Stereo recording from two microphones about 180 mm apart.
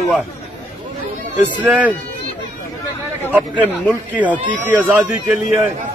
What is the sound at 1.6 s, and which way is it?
Speech, 10° right (ahead or behind).